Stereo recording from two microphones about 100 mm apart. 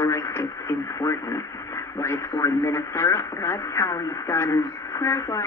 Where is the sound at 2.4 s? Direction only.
30° left (ahead or behind).